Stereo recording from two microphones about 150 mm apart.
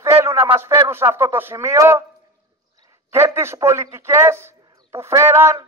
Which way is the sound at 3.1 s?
15° right (ahead or behind).